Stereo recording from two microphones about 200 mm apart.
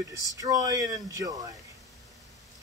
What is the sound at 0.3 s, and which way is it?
Speech, 20° right (ahead or behind).